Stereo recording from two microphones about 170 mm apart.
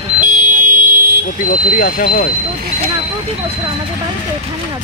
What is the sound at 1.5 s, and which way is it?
Speech, 60° left (ahead or behind).